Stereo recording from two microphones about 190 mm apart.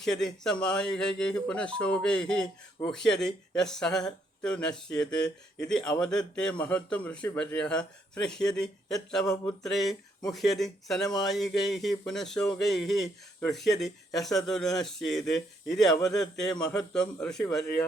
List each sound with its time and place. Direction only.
0.0 s speech: 5° left (ahead or behind)
9.2 s a sound: 20° left (ahead or behind)
9.5 s speech: centre (ahead or behind)